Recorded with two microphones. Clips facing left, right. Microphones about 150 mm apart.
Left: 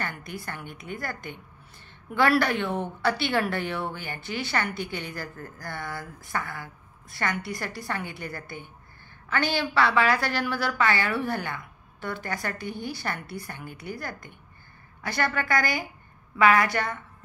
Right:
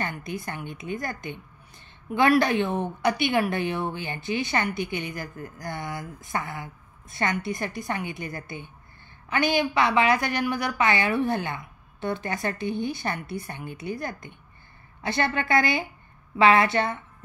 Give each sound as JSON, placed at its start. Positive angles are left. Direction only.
{"t": 0.0, "sound": "a woman's voice", "side_deg": -20}